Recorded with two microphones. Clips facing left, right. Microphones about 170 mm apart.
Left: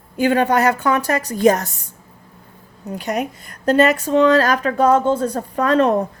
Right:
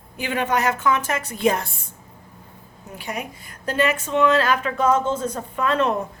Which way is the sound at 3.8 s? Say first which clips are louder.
Left 5 dB; 40° left (ahead or behind).